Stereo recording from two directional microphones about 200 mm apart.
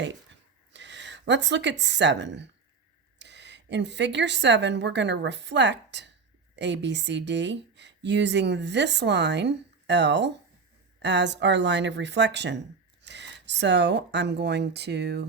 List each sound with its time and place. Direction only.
0.7 s speech: 60° right (ahead or behind)